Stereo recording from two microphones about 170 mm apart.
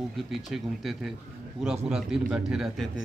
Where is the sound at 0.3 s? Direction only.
Centre (ahead or behind).